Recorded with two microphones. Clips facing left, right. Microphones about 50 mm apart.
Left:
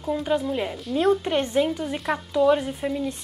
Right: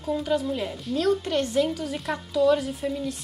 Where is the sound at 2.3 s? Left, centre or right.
Left.